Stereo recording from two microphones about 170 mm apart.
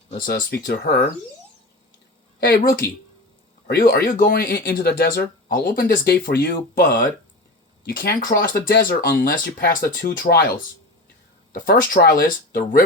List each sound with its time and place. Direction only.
0.1 s speech: 60° left (ahead or behind)
3.7 s speech: 60° left (ahead or behind)